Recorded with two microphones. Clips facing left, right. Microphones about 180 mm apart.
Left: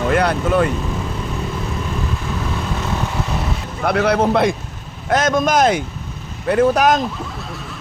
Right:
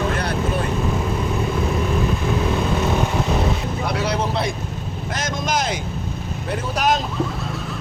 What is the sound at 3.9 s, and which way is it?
Speech, 55° left (ahead or behind).